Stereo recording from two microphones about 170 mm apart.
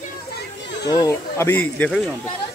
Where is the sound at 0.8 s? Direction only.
20° left (ahead or behind).